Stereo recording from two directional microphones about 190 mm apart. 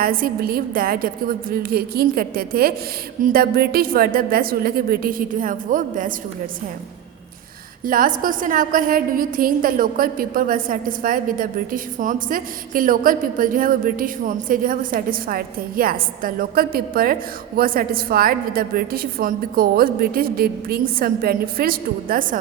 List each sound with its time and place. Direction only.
0.0 s a woman's voice: 50° right (ahead or behind)
7.9 s a woman's voice: 45° right (ahead or behind)